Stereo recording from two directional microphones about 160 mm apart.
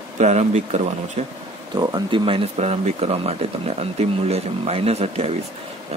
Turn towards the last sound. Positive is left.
turn(degrees=-40)  # may be behind; listen again after turning